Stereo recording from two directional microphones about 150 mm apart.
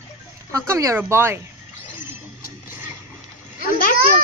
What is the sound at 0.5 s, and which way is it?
Speech, 20° right (ahead or behind).